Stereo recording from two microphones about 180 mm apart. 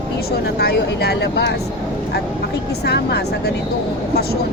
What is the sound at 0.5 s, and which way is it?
Speech, 65° left (ahead or behind).